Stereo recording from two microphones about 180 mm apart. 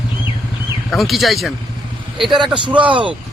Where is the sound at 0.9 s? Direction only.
Centre (ahead or behind).